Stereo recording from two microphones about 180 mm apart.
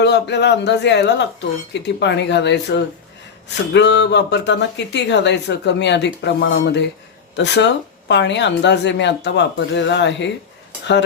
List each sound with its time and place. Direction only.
0.0 s speech: 70° left (ahead or behind)